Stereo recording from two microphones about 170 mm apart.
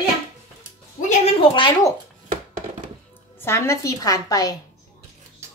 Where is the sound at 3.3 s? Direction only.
15° left (ahead or behind).